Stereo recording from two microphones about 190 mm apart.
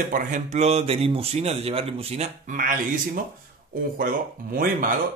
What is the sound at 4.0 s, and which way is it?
Speech, 45° right (ahead or behind).